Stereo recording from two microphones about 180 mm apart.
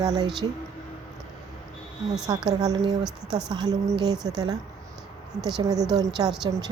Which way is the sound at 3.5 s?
20° right (ahead or behind).